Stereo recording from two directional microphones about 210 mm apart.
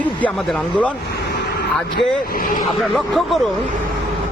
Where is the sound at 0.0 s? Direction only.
5° left (ahead or behind).